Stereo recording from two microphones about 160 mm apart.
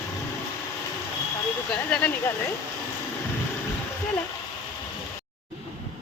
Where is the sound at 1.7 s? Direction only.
10° left (ahead or behind).